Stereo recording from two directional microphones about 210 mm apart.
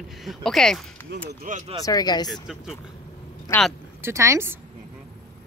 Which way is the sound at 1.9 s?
20° left (ahead or behind).